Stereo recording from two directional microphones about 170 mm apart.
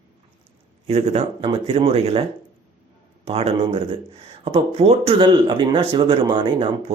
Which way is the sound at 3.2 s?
35° right (ahead or behind).